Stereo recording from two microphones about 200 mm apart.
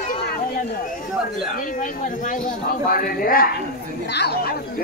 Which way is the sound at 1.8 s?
40° left (ahead or behind).